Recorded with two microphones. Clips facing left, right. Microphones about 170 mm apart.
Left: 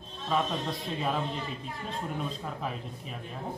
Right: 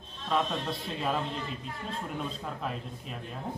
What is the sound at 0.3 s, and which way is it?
Speech, 5° left (ahead or behind).